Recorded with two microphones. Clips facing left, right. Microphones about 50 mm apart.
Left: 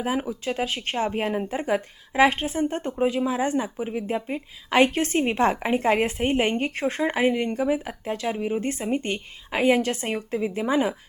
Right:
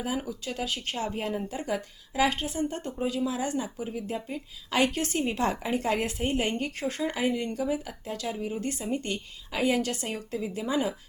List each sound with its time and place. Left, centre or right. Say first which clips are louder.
0.0 s speech: left 6 dB; left